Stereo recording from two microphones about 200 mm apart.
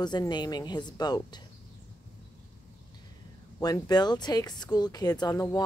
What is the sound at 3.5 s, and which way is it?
A woman's voice, 15° left (ahead or behind).